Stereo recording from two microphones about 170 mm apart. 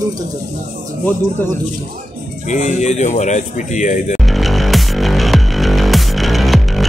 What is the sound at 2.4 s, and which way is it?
A man's voice, 45° left (ahead or behind).